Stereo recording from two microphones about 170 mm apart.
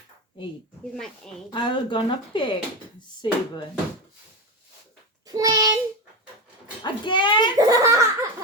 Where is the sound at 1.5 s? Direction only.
30° left (ahead or behind).